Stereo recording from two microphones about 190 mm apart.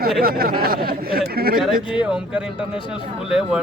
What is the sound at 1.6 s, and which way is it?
Speech, 5° right (ahead or behind).